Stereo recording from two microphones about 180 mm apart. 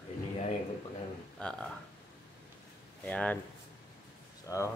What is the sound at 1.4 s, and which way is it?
Speech, 5° left (ahead or behind).